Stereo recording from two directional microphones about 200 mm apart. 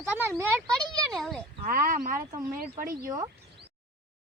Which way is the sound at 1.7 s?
45° right (ahead or behind).